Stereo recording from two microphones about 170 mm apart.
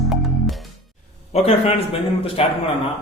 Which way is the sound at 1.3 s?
35° left (ahead or behind).